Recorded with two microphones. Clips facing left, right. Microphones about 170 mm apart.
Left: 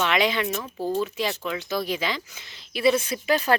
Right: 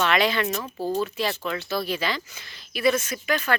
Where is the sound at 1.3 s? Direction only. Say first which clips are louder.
Even; 15° left (ahead or behind); by 3.6 s 30° left (ahead or behind).